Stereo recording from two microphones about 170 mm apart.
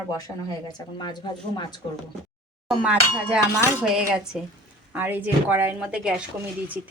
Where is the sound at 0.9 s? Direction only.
25° left (ahead or behind).